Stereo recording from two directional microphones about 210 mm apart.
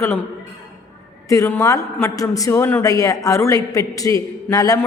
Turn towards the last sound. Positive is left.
turn(degrees=15)  # may be behind; listen again after turning